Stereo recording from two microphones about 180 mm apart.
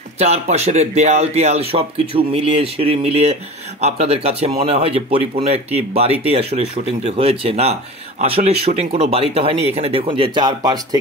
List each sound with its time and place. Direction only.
0.2 s speech: 35° right (ahead or behind); by 11.0 s 20° right (ahead or behind)